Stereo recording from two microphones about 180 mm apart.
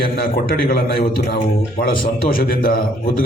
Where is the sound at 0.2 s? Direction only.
55° left (ahead or behind).